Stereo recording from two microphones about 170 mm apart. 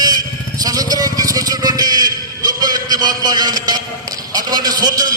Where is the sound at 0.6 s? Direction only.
20° right (ahead or behind).